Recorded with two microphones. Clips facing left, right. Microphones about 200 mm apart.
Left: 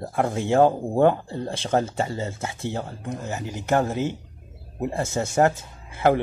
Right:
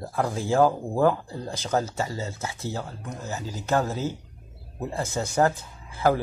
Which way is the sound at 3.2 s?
20° left (ahead or behind).